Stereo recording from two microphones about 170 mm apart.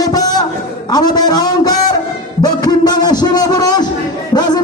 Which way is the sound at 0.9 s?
25° left (ahead or behind).